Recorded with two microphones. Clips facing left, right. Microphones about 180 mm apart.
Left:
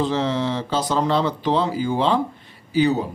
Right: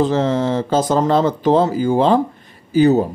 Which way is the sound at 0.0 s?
45° right (ahead or behind).